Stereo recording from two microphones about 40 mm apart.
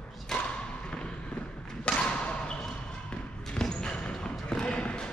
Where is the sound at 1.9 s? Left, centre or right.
Left.